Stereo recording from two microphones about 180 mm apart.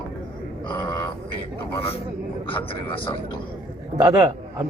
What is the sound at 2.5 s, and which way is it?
Speech, 30° left (ahead or behind).